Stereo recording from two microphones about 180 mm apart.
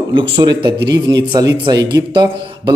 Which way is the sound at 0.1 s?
25° right (ahead or behind).